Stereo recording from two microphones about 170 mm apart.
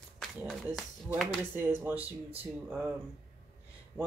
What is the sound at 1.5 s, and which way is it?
Speech, 10° right (ahead or behind).